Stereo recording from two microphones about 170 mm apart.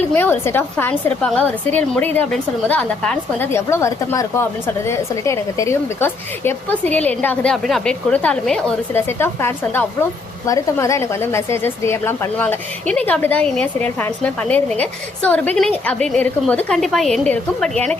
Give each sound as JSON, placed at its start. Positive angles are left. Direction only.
{"t": 0.1, "sound": "a woman's voice", "side_deg": 10}
{"t": 3.7, "sound": "a woman's voice", "side_deg": 15}